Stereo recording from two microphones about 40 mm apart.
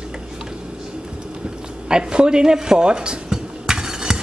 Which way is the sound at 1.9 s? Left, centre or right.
Right.